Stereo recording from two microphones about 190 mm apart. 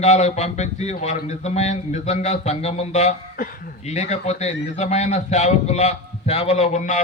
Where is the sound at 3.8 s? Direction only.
35° left (ahead or behind).